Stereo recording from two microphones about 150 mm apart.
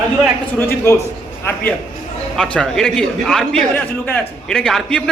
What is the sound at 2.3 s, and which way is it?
A man's voice, 5° left (ahead or behind).